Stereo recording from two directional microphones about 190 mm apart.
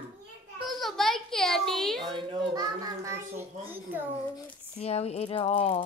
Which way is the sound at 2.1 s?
20° right (ahead or behind).